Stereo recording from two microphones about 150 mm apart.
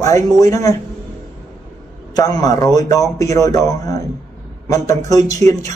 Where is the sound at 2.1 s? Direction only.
25° left (ahead or behind).